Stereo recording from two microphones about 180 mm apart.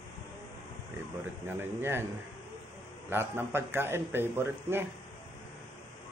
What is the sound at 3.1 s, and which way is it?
Speech, 15° right (ahead or behind).